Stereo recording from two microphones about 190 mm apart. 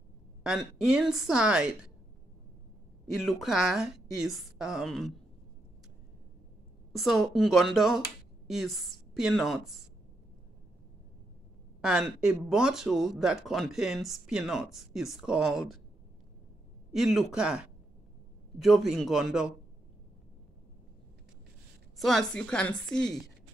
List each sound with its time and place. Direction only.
0.4 s speech: 5° right (ahead or behind)
3.1 s speech: centre (ahead or behind)
6.9 s speech: centre (ahead or behind)
11.8 s speech: 5° right (ahead or behind)
16.9 s speech: centre (ahead or behind)
21.9 s speech: centre (ahead or behind)